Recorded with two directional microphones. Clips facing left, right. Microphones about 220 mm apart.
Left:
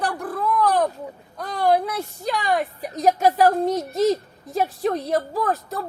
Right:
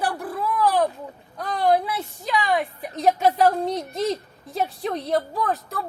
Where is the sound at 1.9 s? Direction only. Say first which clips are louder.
Left 1 dB; 45° left (ahead or behind).